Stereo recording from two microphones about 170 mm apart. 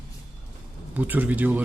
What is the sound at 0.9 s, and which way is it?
Speech, 10° right (ahead or behind).